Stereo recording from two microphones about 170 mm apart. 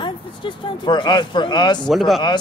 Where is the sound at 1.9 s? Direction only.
Centre (ahead or behind).